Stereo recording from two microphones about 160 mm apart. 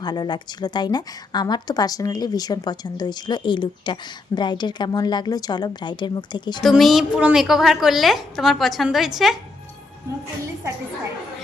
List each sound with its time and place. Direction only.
0.0 s a woman's voice: 25° left (ahead or behind)
6.6 s a woman's voice: centre (ahead or behind)